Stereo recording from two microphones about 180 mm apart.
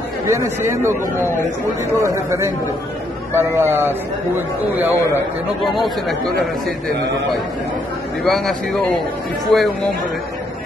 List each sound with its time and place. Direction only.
0.3 s speech: 15° right (ahead or behind); by 6.3 s centre (ahead or behind)
8.2 s speech: centre (ahead or behind)